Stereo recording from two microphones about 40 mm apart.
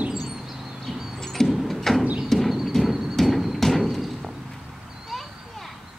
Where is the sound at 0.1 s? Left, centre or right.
Centre.